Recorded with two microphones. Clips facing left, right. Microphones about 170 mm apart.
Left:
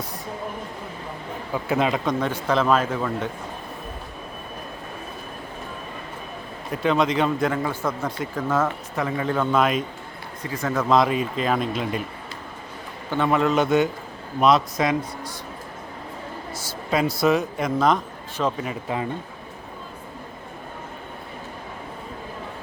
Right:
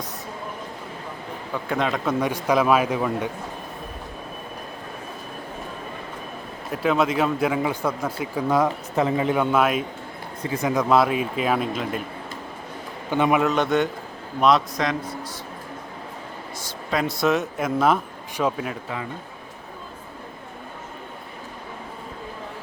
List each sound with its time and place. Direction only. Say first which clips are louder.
1.6 s a man's voice: left 2 dB; 5° left (ahead or behind)
2.0 s speech: right 1 dB; 10° right (ahead or behind)
6.7 s speech: even; 5° right (ahead or behind)
9.0 s a man's voice: right 3 dB; 25° right (ahead or behind); by 12.0 s centre (ahead or behind)
13.1 s speech: right 2 dB; 15° right (ahead or behind)
13.4 s a man's voice: left 1 dB; centre (ahead or behind)
16.9 s a man's voice: left 2 dB; centre (ahead or behind)